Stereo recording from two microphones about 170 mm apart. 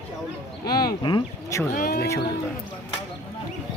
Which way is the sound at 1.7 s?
60° left (ahead or behind).